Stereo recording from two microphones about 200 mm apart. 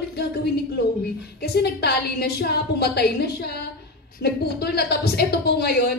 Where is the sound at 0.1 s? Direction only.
55° left (ahead or behind).